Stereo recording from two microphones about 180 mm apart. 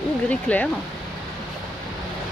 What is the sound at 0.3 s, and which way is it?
Speech, 10° left (ahead or behind).